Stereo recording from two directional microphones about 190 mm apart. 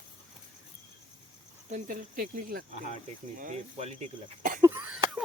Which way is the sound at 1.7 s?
45° right (ahead or behind).